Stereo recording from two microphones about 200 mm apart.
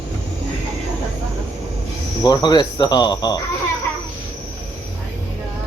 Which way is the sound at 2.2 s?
20° left (ahead or behind).